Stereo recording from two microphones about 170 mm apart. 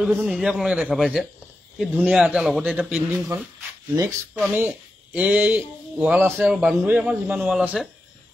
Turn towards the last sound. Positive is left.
turn(degrees=-5)  # may be behind; listen again after turning